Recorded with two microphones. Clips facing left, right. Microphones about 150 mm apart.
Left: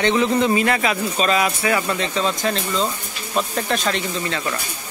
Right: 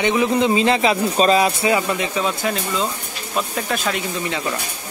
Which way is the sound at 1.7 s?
15° right (ahead or behind).